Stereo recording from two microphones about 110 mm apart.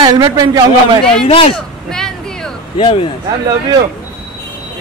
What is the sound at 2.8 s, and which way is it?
Speech, 45° left (ahead or behind).